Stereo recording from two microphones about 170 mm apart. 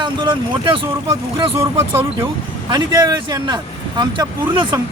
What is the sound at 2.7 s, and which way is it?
Speech, 25° right (ahead or behind).